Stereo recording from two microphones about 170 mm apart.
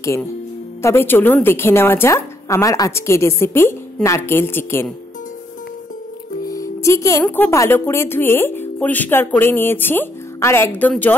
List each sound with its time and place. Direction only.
0.8 s a woman's voice: 15° left (ahead or behind)
6.4 s music: 20° left (ahead or behind)
7.2 s a woman's voice: 10° left (ahead or behind)